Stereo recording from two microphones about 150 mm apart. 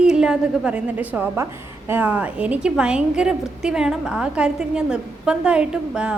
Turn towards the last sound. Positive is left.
turn(degrees=-5)  # may be behind; listen again after turning